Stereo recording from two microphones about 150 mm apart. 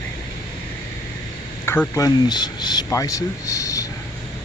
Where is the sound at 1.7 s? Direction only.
20° left (ahead or behind).